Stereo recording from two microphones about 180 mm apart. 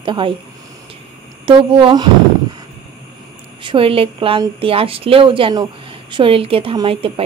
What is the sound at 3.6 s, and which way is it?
Speech, 30° right (ahead or behind).